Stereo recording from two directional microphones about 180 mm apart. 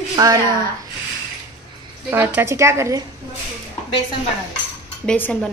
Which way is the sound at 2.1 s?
10° right (ahead or behind).